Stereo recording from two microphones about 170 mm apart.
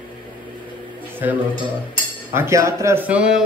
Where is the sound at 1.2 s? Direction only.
10° right (ahead or behind).